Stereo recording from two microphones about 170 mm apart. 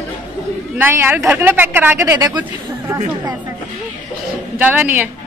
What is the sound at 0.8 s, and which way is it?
Speech, 10° right (ahead or behind).